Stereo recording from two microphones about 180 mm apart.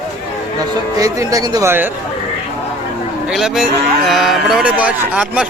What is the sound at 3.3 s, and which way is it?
Speech, 5° right (ahead or behind).